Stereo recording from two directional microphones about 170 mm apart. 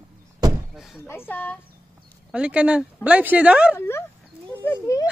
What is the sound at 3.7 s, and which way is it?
Speech, 15° left (ahead or behind).